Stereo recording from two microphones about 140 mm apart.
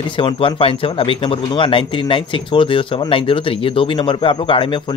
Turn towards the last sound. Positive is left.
turn(degrees=35)  # may be behind; listen again after turning